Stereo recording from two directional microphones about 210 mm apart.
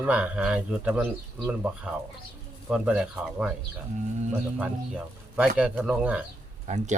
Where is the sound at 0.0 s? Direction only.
5° right (ahead or behind).